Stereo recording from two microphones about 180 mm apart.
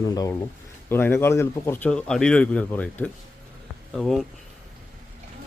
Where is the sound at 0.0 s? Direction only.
20° left (ahead or behind).